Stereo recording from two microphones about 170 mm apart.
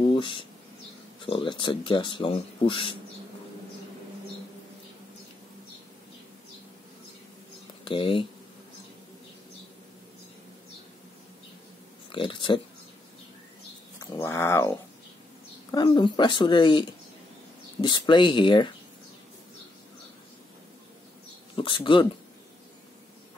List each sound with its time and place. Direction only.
0.1 s speech: 30° left (ahead or behind)
7.8 s speech: 30° left (ahead or behind)
12.1 s speech: 30° left (ahead or behind)
13.9 s speech: 15° left (ahead or behind)
15.7 s speech: 25° left (ahead or behind)
21.5 s speech: 30° left (ahead or behind)